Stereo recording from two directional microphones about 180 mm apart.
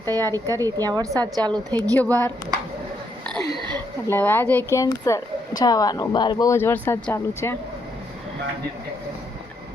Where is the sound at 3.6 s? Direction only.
25° right (ahead or behind).